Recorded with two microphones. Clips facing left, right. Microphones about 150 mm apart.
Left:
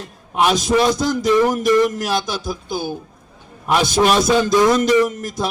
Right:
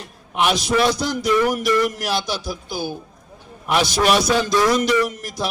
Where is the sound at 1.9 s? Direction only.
45° left (ahead or behind).